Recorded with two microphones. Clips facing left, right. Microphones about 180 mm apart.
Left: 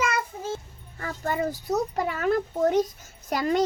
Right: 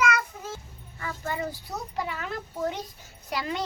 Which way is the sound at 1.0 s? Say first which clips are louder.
Left 4 dB; 45° left (ahead or behind).